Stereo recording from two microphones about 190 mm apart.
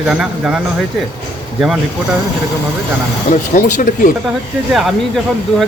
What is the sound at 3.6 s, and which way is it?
Speech, 45° left (ahead or behind).